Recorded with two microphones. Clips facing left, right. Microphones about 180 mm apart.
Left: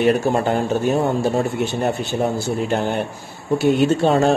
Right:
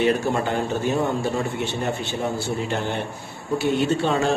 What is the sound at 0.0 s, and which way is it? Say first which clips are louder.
Speech: left 4 dB; 50° left (ahead or behind).